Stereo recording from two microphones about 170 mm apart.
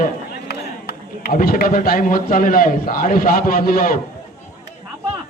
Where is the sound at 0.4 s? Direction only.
70° left (ahead or behind).